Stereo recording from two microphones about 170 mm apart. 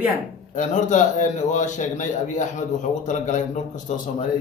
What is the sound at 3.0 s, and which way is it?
Speech, 45° left (ahead or behind).